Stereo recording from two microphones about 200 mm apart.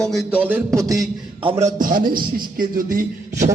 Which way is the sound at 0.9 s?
Centre (ahead or behind).